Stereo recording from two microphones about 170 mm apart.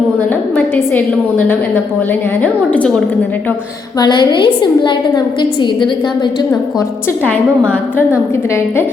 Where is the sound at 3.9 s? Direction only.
25° left (ahead or behind).